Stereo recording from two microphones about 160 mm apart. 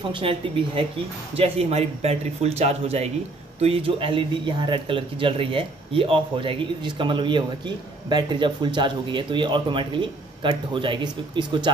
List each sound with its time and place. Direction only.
0.1 s speech: 35° right (ahead or behind)